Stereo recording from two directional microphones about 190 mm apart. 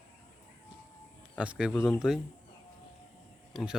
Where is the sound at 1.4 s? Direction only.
5° right (ahead or behind).